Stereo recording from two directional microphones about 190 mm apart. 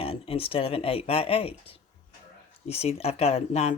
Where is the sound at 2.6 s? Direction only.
30° left (ahead or behind).